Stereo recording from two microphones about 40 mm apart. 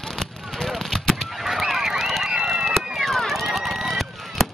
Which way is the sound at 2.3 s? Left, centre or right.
Centre.